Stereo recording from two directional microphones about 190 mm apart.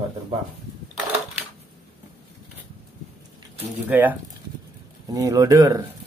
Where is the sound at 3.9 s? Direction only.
10° right (ahead or behind).